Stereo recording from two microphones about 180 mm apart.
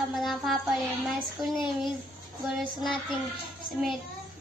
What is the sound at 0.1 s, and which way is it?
Child singing, centre (ahead or behind).